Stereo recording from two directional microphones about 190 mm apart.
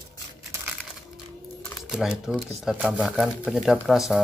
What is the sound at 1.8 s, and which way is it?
Speech, 5° right (ahead or behind).